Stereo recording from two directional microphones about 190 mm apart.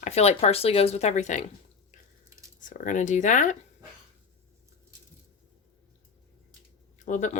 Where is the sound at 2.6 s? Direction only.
45° left (ahead or behind).